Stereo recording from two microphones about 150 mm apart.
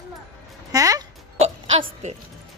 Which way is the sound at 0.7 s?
25° right (ahead or behind).